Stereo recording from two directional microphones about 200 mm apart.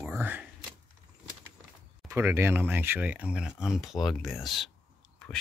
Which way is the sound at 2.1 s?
10° right (ahead or behind).